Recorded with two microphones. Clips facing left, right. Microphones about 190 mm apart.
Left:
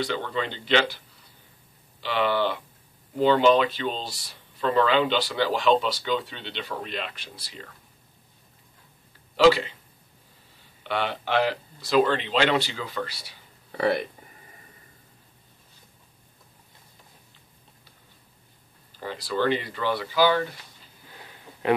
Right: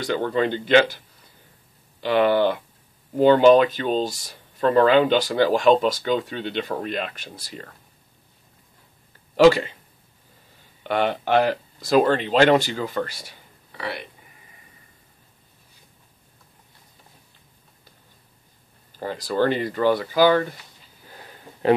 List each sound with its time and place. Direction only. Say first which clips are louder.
0.0 s speech: right 6 dB; 45° right (ahead or behind)
9.4 s speech: right 4 dB; 45° right (ahead or behind)
10.8 s speech: right 6 dB; 50° right (ahead or behind)
13.7 s speech: left 8 dB; 45° left (ahead or behind)
18.9 s speech: right 5 dB; 45° right (ahead or behind)